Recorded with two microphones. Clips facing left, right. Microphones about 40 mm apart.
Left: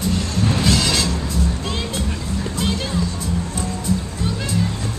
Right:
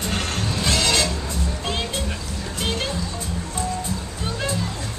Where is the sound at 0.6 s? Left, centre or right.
Centre.